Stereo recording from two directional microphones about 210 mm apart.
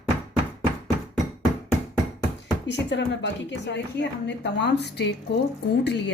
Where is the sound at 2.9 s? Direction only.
60° left (ahead or behind).